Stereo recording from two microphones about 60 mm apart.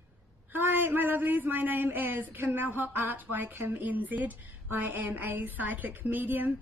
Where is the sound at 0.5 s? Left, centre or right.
Right.